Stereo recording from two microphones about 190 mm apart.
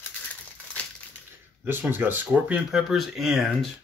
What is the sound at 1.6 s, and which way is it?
Speech, 10° right (ahead or behind).